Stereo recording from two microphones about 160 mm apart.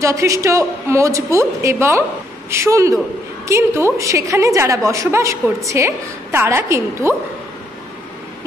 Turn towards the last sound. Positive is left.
turn(degrees=-15)  # may be behind; listen again after turning